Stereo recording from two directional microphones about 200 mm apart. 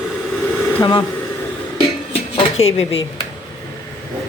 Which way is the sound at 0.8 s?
25° left (ahead or behind).